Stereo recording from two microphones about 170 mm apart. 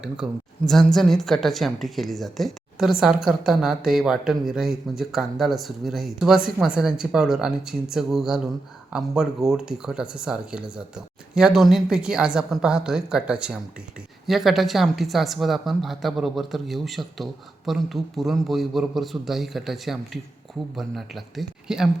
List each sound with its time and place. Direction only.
0.0 s a woman's voice: centre (ahead or behind)